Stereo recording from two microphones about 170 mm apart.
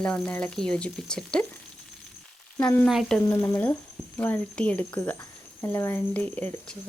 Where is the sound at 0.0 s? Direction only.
5° left (ahead or behind).